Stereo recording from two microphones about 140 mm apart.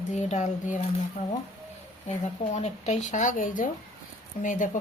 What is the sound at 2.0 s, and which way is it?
Speech, 55° left (ahead or behind).